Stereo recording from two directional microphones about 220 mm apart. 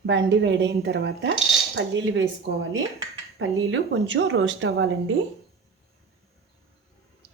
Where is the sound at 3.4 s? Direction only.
55° right (ahead or behind).